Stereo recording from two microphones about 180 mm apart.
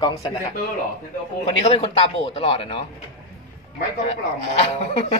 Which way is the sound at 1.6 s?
35° left (ahead or behind).